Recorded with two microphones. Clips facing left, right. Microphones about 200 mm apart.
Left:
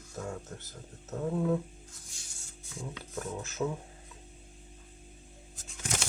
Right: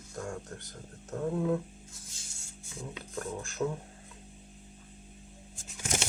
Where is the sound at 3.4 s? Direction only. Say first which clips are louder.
Right 1 dB; centre (ahead or behind).